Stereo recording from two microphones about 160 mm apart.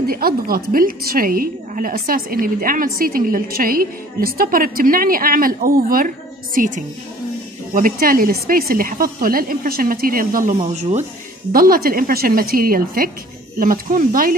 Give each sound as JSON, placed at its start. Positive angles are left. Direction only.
{"t": 0.1, "sound": "a woman's voice", "side_deg": -65}
{"t": 10.6, "sound": "speech", "side_deg": -45}
{"t": 11.5, "sound": "a woman's voice", "side_deg": -65}